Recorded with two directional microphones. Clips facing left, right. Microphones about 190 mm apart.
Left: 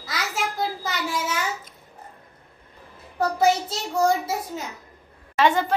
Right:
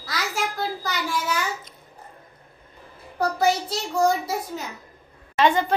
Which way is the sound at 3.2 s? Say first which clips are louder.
Left 1 dB; centre (ahead or behind).